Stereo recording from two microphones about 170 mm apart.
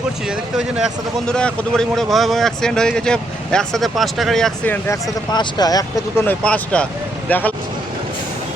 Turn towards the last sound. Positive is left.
turn(degrees=10)  # may be behind; listen again after turning